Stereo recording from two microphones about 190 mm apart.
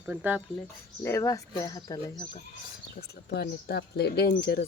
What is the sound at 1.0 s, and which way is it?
Speech, 15° left (ahead or behind).